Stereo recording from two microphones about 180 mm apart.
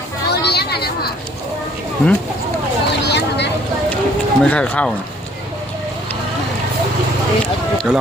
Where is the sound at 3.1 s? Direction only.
70° left (ahead or behind).